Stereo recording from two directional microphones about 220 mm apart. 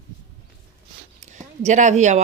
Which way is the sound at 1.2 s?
35° right (ahead or behind).